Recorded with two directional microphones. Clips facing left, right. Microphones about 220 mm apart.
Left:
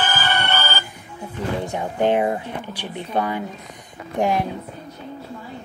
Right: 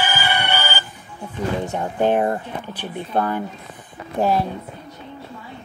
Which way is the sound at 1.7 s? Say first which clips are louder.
Even; 10° left (ahead or behind).